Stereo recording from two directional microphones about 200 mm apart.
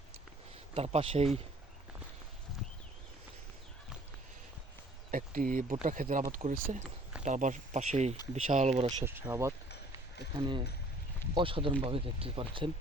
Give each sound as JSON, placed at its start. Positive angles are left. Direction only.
{"t": 0.7, "sound": "speech", "side_deg": -30}
{"t": 5.1, "sound": "speech", "side_deg": -40}
{"t": 9.0, "sound": "speech", "side_deg": -10}
{"t": 9.6, "sound": "a sound", "side_deg": 55}
{"t": 10.3, "sound": "speech", "side_deg": -25}